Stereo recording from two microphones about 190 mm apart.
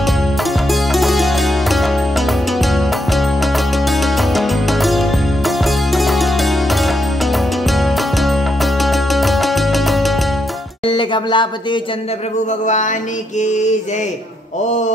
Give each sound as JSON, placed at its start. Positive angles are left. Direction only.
{"t": 0.9, "sound": "music", "side_deg": 0}
{"t": 4.4, "sound": "music", "side_deg": 0}
{"t": 8.8, "sound": "music", "side_deg": 0}
{"t": 10.9, "sound": "music", "side_deg": 25}
{"t": 13.4, "sound": "mantra", "side_deg": 40}